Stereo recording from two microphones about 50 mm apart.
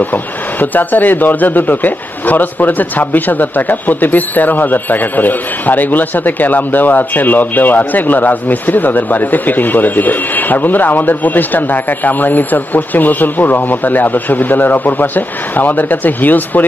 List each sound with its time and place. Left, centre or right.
0.0 s speech: left